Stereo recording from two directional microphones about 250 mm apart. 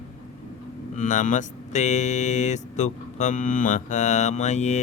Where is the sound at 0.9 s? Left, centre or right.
Left.